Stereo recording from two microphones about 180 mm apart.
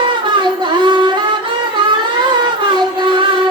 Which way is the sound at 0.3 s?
25° right (ahead or behind).